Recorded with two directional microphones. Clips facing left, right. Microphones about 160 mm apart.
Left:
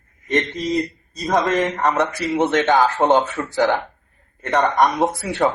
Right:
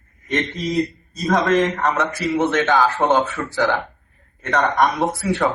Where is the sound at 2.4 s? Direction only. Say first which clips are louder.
Left 2 dB; 20° left (ahead or behind).